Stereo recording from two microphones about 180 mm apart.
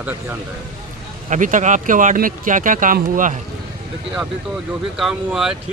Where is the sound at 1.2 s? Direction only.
45° right (ahead or behind).